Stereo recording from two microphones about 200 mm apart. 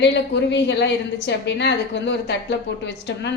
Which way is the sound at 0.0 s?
60° left (ahead or behind).